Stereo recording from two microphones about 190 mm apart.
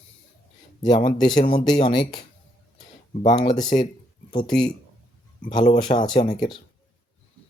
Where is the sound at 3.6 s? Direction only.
25° left (ahead or behind).